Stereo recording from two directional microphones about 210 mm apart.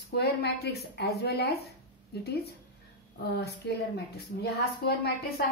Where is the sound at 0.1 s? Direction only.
50° left (ahead or behind).